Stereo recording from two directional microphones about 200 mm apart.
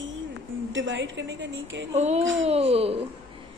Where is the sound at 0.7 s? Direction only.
65° right (ahead or behind).